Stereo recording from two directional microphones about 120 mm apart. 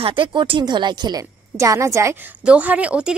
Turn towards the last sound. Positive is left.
turn(degrees=-10)  # may be behind; listen again after turning